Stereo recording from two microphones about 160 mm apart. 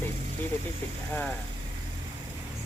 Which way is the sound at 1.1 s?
10° left (ahead or behind).